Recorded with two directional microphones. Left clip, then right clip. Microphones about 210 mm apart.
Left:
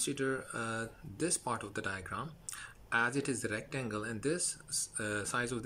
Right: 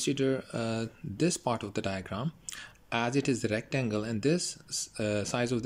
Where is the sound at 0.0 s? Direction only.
15° right (ahead or behind).